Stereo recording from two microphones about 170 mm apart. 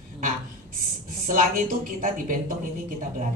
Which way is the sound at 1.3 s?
50° right (ahead or behind).